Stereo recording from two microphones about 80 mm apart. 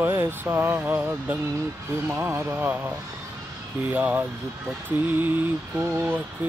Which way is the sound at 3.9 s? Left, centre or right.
Right.